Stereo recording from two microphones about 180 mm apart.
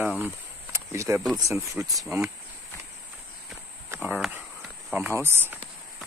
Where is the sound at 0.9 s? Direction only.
15° right (ahead or behind).